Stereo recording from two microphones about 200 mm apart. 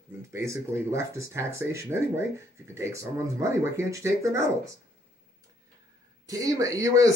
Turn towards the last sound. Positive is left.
turn(degrees=-15)  # may be behind; listen again after turning